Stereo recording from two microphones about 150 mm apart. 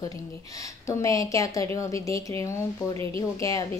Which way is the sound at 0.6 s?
20° left (ahead or behind).